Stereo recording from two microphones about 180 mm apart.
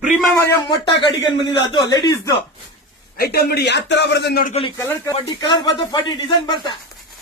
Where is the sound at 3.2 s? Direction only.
60° left (ahead or behind).